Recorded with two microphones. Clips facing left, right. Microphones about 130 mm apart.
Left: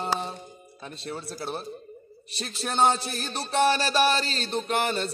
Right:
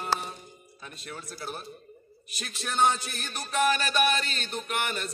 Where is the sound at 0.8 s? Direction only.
30° left (ahead or behind).